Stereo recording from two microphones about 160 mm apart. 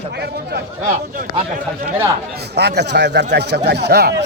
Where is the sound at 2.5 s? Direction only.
90° right.